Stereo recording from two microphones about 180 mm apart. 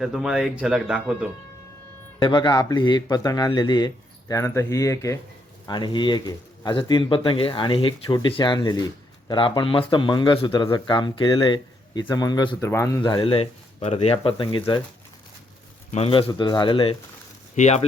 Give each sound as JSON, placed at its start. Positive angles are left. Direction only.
{"t": 0.0, "sound": "speech", "side_deg": 0}
{"t": 2.1, "sound": "speech", "side_deg": 25}
{"t": 15.9, "sound": "speech", "side_deg": 35}
{"t": 17.5, "sound": "speech", "side_deg": 40}